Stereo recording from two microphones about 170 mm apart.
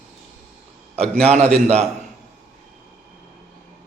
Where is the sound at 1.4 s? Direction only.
5° left (ahead or behind).